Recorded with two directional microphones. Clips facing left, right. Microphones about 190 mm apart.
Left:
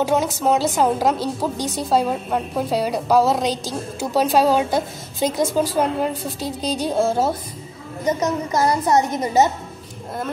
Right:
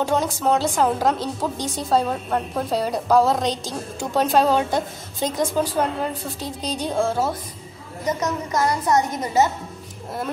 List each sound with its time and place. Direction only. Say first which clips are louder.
0.0 s a woman's voice: left 2 dB; 5° left (ahead or behind)
8.2 s a woman's voice: left 2 dB; 30° left (ahead or behind)